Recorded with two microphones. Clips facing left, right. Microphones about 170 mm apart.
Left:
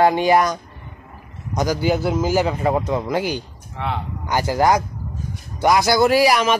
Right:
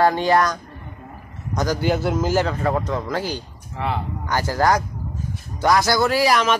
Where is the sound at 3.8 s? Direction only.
Centre (ahead or behind).